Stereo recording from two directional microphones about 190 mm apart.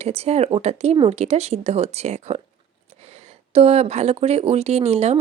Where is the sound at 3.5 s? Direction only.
30° right (ahead or behind).